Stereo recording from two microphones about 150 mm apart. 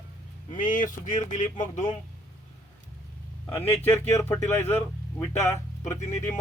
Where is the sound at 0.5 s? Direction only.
60° left (ahead or behind).